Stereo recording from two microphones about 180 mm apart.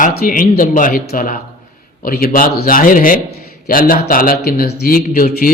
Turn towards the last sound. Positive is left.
turn(degrees=50)  # may be behind; listen again after turning